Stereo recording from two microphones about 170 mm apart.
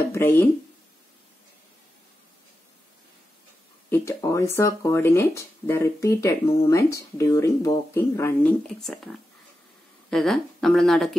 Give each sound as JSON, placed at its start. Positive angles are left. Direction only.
{"t": 0.1, "sound": "speech", "side_deg": 10}
{"t": 3.9, "sound": "speech", "side_deg": 15}